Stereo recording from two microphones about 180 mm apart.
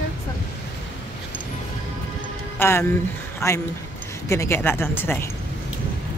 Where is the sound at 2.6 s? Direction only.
15° left (ahead or behind).